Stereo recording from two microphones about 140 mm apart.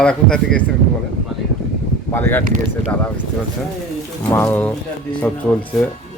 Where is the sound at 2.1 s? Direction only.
15° left (ahead or behind).